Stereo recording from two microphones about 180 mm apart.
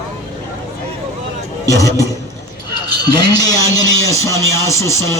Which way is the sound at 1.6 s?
20° left (ahead or behind).